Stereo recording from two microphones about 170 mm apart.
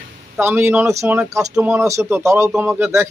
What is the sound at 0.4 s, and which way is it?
Speech, 15° right (ahead or behind).